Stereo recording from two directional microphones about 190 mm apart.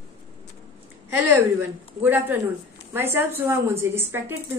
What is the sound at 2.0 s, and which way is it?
A woman's voice, 10° right (ahead or behind).